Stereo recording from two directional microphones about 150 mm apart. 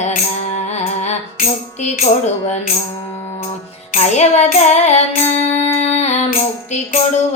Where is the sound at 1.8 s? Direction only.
50° left (ahead or behind).